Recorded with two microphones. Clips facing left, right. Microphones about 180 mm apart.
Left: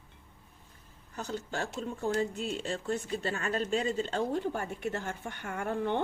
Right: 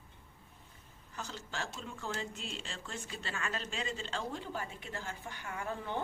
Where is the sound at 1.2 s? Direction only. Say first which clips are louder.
Left 7 dB; 55° left (ahead or behind).